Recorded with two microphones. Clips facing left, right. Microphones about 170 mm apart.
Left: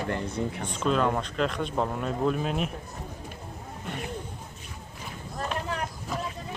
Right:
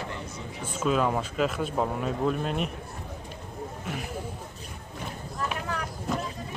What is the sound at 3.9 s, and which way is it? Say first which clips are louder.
Speech: left 2 dB; centre (ahead or behind).